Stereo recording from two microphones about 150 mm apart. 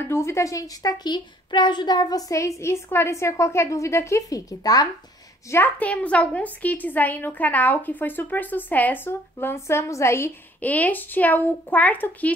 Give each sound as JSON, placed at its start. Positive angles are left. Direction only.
{"t": 0.1, "sound": "a woman's voice", "side_deg": 20}
{"t": 5.5, "sound": "a woman's voice", "side_deg": 10}